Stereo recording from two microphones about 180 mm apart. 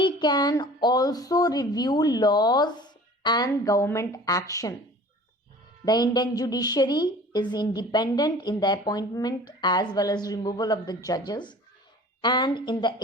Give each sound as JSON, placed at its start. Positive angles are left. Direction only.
{"t": 0.0, "sound": "a woman's voice", "side_deg": 25}
{"t": 5.8, "sound": "a woman's voice", "side_deg": 20}